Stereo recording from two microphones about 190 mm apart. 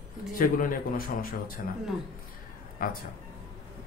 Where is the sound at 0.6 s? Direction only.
45° left (ahead or behind).